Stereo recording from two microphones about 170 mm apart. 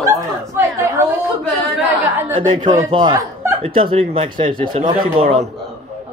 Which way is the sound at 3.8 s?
30° right (ahead or behind).